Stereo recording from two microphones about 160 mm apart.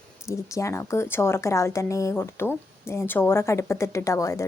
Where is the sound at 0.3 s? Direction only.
20° left (ahead or behind).